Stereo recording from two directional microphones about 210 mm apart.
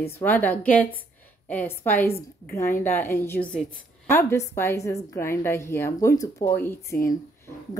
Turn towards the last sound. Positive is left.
turn(degrees=10)  # may be behind; listen again after turning